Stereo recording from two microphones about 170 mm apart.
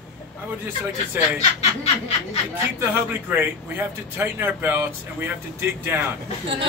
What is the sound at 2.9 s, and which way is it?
A man's voice, 10° right (ahead or behind).